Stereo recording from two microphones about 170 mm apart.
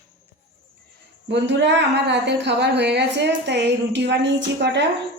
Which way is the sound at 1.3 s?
90° right.